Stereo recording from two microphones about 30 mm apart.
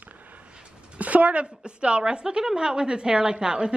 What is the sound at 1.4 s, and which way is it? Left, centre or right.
A woman's voice, right.